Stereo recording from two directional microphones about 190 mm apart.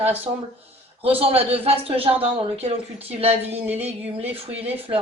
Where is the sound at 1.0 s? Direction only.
30° right (ahead or behind).